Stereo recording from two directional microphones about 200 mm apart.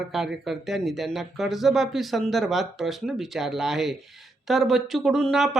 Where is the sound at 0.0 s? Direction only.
Centre (ahead or behind).